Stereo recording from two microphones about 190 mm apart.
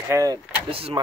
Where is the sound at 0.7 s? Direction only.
30° right (ahead or behind).